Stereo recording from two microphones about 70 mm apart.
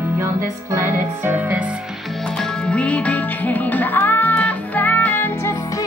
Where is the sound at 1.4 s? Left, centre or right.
Right.